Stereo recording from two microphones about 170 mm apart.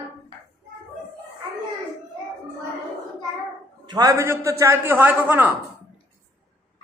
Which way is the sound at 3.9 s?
20° right (ahead or behind).